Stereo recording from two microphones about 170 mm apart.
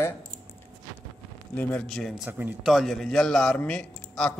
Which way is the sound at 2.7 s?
Centre (ahead or behind).